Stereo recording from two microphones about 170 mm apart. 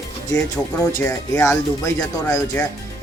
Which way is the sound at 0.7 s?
10° left (ahead or behind).